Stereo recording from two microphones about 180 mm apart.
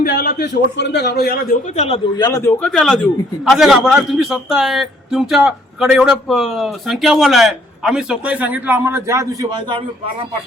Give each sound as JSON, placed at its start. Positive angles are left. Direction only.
{"t": 0.0, "sound": "a man's voice", "side_deg": 55}
{"t": 1.7, "sound": "a man's voice", "side_deg": 40}
{"t": 2.1, "sound": "a man's voice", "side_deg": 20}
{"t": 2.6, "sound": "a man's voice", "side_deg": 5}